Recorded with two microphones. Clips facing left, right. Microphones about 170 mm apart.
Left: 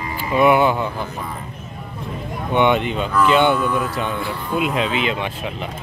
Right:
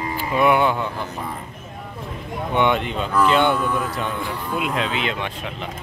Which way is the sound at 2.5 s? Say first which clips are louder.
Left 3 dB; centre (ahead or behind).